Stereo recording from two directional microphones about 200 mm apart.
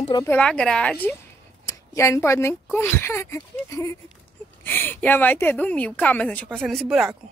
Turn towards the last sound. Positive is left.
turn(degrees=0)  # may be behind; listen again after turning